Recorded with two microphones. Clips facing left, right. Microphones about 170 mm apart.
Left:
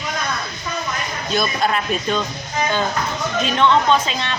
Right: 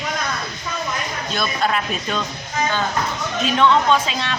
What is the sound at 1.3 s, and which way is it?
Speech, centre (ahead or behind).